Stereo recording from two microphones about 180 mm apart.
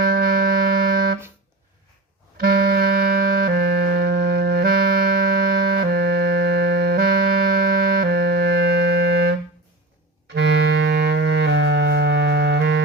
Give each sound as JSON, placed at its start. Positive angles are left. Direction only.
{"t": 0.0, "sound": "music", "side_deg": -55}
{"t": 2.4, "sound": "music", "side_deg": -55}
{"t": 5.7, "sound": "music", "side_deg": -60}
{"t": 10.3, "sound": "clarinet", "side_deg": -80}